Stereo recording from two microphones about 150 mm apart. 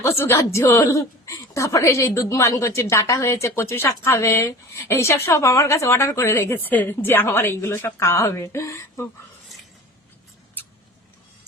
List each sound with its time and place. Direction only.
0.0 s a woman's voice: 20° left (ahead or behind)